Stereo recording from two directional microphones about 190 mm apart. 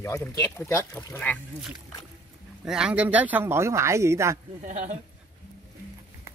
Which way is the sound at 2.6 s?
5° right (ahead or behind).